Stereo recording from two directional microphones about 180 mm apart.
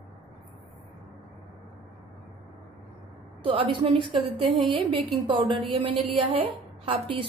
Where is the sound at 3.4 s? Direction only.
30° right (ahead or behind).